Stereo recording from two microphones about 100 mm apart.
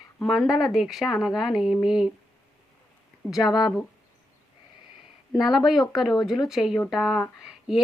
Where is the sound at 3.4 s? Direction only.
40° left (ahead or behind).